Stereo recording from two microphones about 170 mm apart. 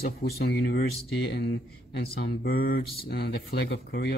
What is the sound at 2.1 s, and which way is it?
A man's voice, 70° left (ahead or behind).